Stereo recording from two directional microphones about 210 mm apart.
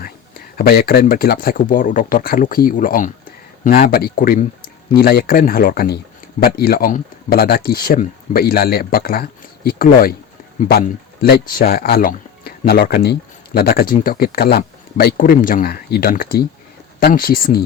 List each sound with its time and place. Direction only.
0.5 s speech: 45° left (ahead or behind)